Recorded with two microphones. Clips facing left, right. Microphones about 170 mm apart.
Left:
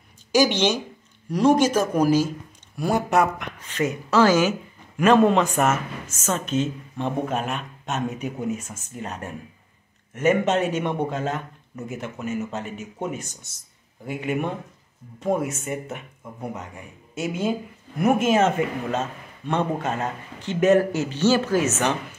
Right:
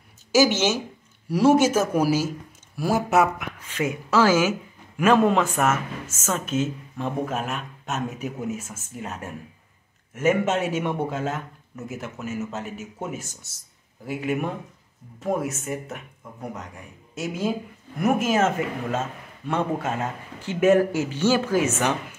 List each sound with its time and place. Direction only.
0.3 s speech: 5° right (ahead or behind)